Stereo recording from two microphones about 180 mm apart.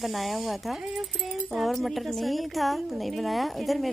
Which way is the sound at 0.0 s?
Centre (ahead or behind).